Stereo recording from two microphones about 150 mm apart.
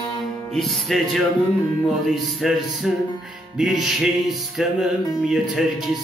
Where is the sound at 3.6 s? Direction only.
5° right (ahead or behind).